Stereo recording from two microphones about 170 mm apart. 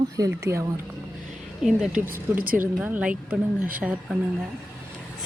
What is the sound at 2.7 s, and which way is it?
Speech, 5° right (ahead or behind).